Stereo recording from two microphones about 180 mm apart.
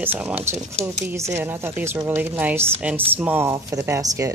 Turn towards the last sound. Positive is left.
turn(degrees=-15)  # may be behind; listen again after turning